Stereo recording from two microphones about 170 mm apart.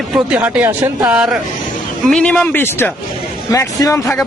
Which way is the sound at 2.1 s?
5° left (ahead or behind).